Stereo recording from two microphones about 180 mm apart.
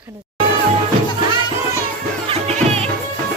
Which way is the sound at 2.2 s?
35° right (ahead or behind).